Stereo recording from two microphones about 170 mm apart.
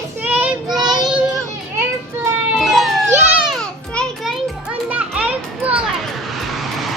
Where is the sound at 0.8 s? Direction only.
25° right (ahead or behind).